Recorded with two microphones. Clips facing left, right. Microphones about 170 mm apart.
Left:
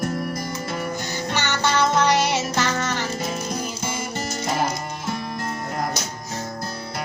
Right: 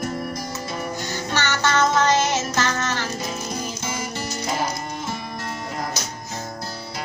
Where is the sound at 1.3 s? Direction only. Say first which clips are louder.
Right 1 dB; 15° left (ahead or behind).